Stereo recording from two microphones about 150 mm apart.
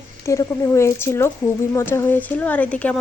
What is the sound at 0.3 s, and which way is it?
Speech, 20° left (ahead or behind).